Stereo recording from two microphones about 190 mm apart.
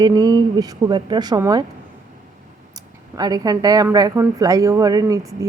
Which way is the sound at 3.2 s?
20° right (ahead or behind).